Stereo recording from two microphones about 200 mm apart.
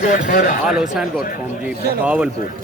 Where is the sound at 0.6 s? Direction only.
5° right (ahead or behind).